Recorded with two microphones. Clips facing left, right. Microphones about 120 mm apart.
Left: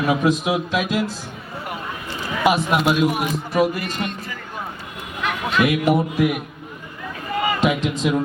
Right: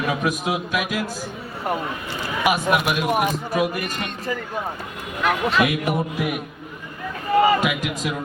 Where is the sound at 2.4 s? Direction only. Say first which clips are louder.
Left 2 dB; 25° left (ahead or behind).